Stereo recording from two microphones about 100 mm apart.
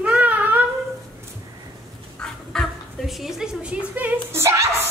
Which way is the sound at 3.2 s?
5° right (ahead or behind).